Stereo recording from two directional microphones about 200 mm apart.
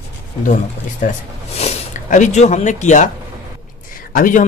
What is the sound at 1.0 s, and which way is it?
Speech, 35° left (ahead or behind).